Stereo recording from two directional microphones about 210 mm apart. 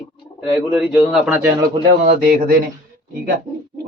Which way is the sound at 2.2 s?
40° right (ahead or behind).